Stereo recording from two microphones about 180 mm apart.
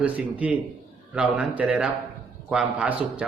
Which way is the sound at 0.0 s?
10° right (ahead or behind).